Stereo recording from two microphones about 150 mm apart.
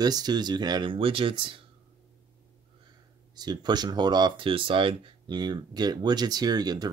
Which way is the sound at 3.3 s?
30° right (ahead or behind).